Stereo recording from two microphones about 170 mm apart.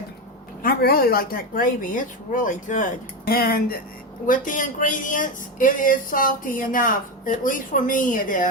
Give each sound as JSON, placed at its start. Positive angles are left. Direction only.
{"t": 0.6, "sound": "speech", "side_deg": 60}
{"t": 3.2, "sound": "speech", "side_deg": 65}
{"t": 4.3, "sound": "speech", "side_deg": 50}